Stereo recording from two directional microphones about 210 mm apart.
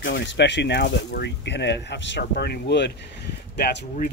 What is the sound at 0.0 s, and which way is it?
Speech, 60° left (ahead or behind).